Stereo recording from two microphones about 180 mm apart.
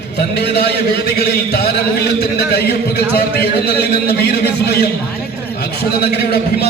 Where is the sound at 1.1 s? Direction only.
65° left (ahead or behind).